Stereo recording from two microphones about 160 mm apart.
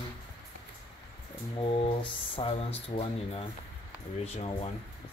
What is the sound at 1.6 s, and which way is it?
Speech, 35° left (ahead or behind).